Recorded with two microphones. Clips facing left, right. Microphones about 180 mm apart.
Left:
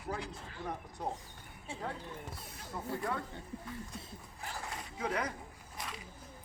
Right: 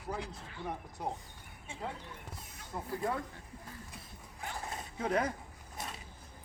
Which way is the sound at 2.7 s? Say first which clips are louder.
Right 1 dB; 25° right (ahead or behind).